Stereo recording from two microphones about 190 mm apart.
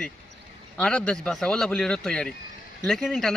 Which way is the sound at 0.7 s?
5° left (ahead or behind).